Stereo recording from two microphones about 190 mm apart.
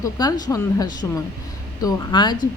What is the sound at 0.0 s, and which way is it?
Speech, 20° left (ahead or behind).